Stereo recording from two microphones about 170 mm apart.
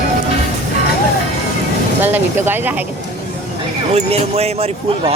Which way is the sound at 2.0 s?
10° right (ahead or behind).